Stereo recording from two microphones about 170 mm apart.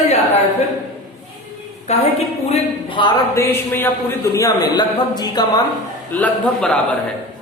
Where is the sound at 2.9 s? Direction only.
30° left (ahead or behind).